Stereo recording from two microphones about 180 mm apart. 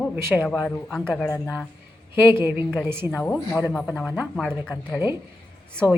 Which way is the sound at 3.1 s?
10° left (ahead or behind).